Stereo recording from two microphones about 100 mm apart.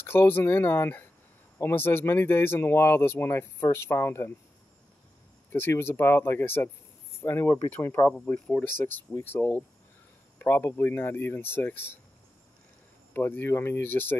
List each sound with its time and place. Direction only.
0.0 s speech: 20° left (ahead or behind)
5.5 s speech: 25° left (ahead or behind)
13.1 s speech: 20° left (ahead or behind)